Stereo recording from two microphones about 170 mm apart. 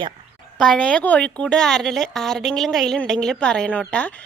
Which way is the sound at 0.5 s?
5° left (ahead or behind).